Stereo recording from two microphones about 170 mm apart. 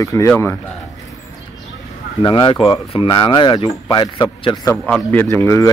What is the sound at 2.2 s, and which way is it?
Speech, 25° left (ahead or behind).